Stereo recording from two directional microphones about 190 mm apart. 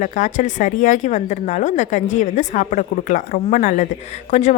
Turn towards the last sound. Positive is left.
turn(degrees=35)  # may be behind; listen again after turning